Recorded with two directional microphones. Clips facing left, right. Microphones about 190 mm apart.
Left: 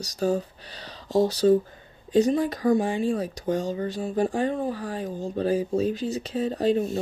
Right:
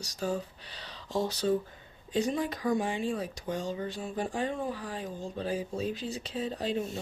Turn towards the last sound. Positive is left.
turn(degrees=45)  # may be behind; listen again after turning